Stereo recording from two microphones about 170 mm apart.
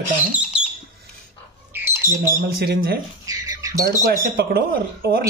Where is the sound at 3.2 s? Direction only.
20° right (ahead or behind).